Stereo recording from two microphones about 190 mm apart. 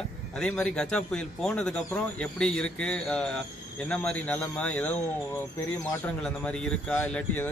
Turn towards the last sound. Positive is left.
turn(degrees=5)  # may be behind; listen again after turning